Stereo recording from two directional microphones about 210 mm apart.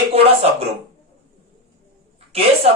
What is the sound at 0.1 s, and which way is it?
Speech, 30° right (ahead or behind).